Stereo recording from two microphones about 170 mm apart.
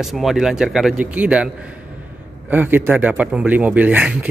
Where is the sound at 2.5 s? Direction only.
10° right (ahead or behind).